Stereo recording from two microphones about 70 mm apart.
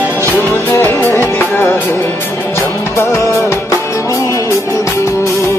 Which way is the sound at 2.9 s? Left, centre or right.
Left.